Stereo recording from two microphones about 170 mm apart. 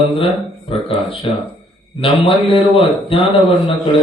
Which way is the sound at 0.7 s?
35° left (ahead or behind).